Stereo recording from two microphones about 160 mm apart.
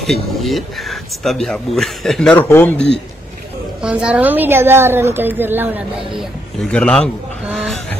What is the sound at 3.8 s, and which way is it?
A woman's voice, 5° right (ahead or behind).